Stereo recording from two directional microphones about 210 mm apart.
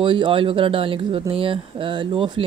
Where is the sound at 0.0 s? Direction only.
25° right (ahead or behind).